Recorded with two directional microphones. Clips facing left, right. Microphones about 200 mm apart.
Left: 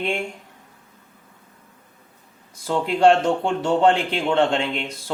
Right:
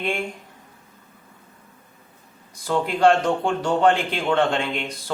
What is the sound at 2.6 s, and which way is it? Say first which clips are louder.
A man's voice: left 1 dB; 25° left (ahead or behind).